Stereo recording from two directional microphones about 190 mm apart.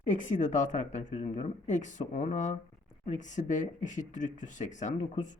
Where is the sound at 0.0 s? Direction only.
40° left (ahead or behind).